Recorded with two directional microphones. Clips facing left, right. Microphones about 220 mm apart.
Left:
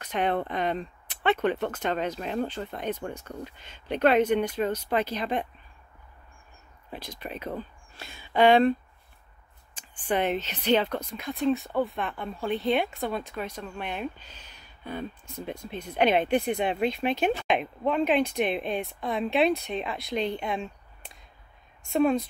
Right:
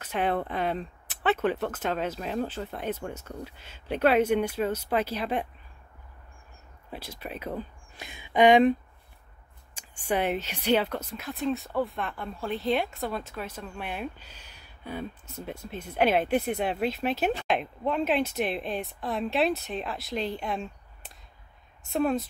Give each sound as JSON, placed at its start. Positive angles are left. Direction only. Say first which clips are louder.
{"t": 0.0, "sound": "speech", "louder": "left 1 dB", "side_deg": -5}
{"t": 6.9, "sound": "speech", "louder": "left 1 dB", "side_deg": -5}
{"t": 9.8, "sound": "speech", "louder": "left 1 dB", "side_deg": -10}